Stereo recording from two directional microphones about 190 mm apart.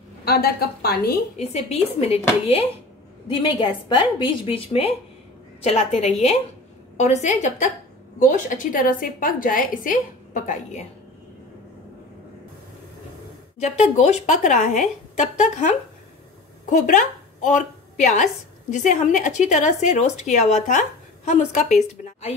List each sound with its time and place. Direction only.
0.2 s a woman's voice: 55° left (ahead or behind)
1.4 s a woman's voice: 35° left (ahead or behind)
13.6 s a woman's voice: 35° left (ahead or behind)